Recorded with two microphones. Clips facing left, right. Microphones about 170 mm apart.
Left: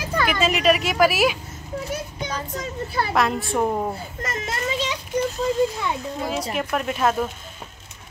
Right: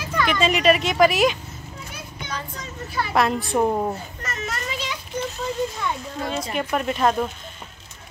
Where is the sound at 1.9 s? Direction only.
40° left (ahead or behind).